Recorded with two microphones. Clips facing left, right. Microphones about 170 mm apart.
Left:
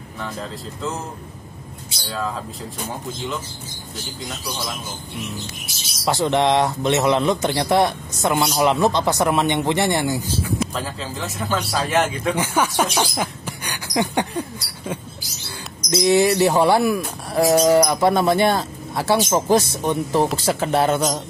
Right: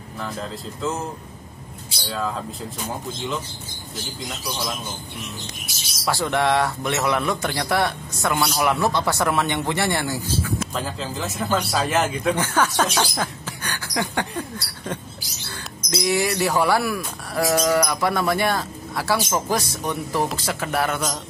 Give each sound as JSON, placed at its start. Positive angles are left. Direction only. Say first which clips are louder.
{"t": 2.0, "sound": "a man's voice", "louder": "even", "side_deg": 0}
{"t": 6.0, "sound": "a man's voice", "louder": "left 3 dB", "side_deg": 20}
{"t": 10.6, "sound": "a man's voice", "louder": "left 2 dB", "side_deg": 0}
{"t": 12.4, "sound": "speech", "louder": "left 1 dB", "side_deg": 10}
{"t": 15.9, "sound": "a man's voice", "louder": "left 6 dB", "side_deg": 25}